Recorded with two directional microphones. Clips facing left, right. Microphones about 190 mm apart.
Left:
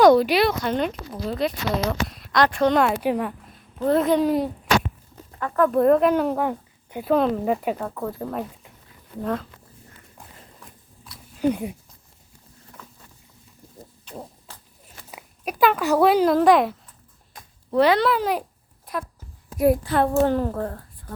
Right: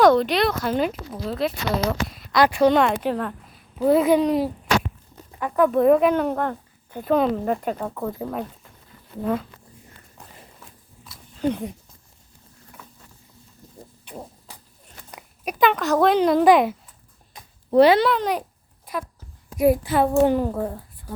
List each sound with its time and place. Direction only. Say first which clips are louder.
0.1 s speech: left 2 dB; 5° left (ahead or behind)
3.8 s speech: right 2 dB; 5° right (ahead or behind)
5.4 s speech: right 1 dB; 15° right (ahead or behind)
5.7 s speech: even; centre (ahead or behind)
10.6 s a sound: even; centre (ahead or behind)
11.3 s speech: left 2 dB; 10° left (ahead or behind)
14.5 s a sound: right 1 dB; 15° right (ahead or behind)
15.1 s speech: even; 5° left (ahead or behind)
17.7 s a child's voice: right 4 dB; 25° right (ahead or behind)
18.0 s speech: even; 5° left (ahead or behind)